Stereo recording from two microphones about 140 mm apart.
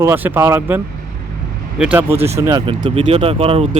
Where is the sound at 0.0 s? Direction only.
15° right (ahead or behind).